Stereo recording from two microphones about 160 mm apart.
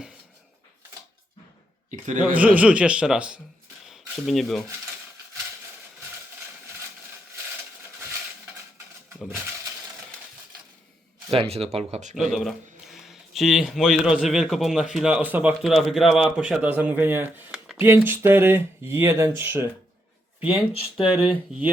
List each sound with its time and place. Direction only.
1.9 s a sound: 50° right (ahead or behind)
2.6 s speech: 5° right (ahead or behind)
3.8 s rub: centre (ahead or behind)
11.3 s speech: 35° right (ahead or behind)
12.3 s speech: centre (ahead or behind)